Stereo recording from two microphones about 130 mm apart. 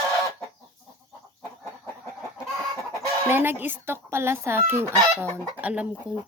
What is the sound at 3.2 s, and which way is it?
Chicken, 15° right (ahead or behind).